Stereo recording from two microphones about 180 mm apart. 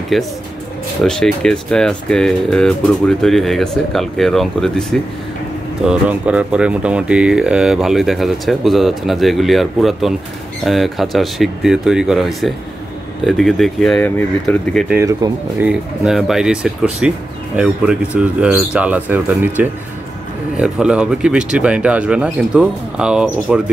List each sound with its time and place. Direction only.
0.1 s speech: centre (ahead or behind)
5.9 s speech: 5° right (ahead or behind)
15.2 s speech: 20° right (ahead or behind)
15.6 s speech: 5° right (ahead or behind)